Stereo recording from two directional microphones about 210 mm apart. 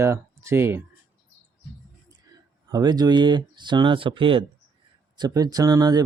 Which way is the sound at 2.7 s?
20° right (ahead or behind).